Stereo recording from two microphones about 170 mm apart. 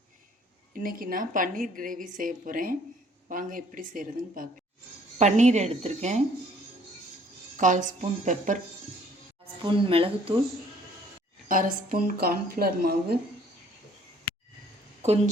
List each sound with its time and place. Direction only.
0.7 s a woman's voice: 55° right (ahead or behind)
7.5 s a woman's voice: 50° right (ahead or behind)
9.6 s speech: 30° right (ahead or behind)
11.4 s a woman's voice: 55° right (ahead or behind)
15.0 s a woman's voice: 40° right (ahead or behind)